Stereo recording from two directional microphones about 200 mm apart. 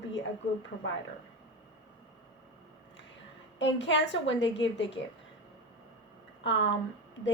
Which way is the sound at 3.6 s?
65° left (ahead or behind).